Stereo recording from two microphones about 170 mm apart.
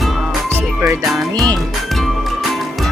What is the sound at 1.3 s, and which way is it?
Music, 20° right (ahead or behind).